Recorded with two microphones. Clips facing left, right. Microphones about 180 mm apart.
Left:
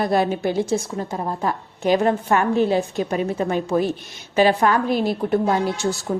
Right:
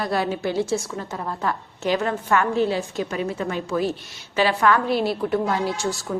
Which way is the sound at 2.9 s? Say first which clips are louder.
Left 4 dB; 30° left (ahead or behind).